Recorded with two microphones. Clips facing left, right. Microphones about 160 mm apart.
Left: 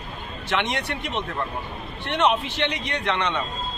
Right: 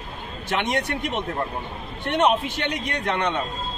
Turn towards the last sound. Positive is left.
turn(degrees=-45)  # may be behind; listen again after turning